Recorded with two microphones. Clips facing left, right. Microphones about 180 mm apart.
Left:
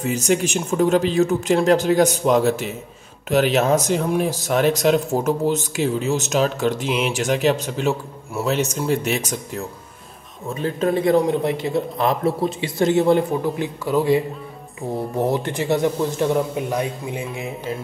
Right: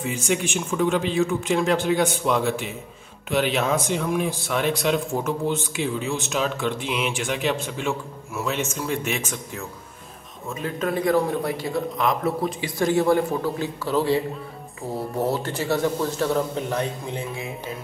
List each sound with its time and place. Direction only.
0.0 s a man's voice: 40° left (ahead or behind); by 17.2 s 10° left (ahead or behind)